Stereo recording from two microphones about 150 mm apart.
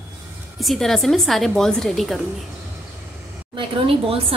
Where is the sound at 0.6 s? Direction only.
Centre (ahead or behind).